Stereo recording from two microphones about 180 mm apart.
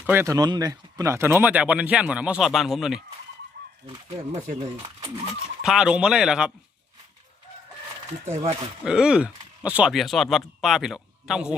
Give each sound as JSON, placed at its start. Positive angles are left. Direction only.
{"t": 0.0, "sound": "speech", "side_deg": -10}
{"t": 3.6, "sound": "chicken", "side_deg": -60}
{"t": 4.3, "sound": "speech", "side_deg": -40}
{"t": 5.6, "sound": "speech", "side_deg": -5}
{"t": 8.2, "sound": "speech", "side_deg": -35}
{"t": 8.8, "sound": "speech", "side_deg": -5}